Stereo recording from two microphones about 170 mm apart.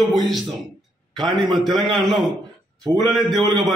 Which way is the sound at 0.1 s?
Centre (ahead or behind).